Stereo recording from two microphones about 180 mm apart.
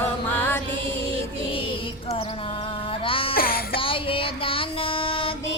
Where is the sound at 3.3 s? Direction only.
55° left (ahead or behind).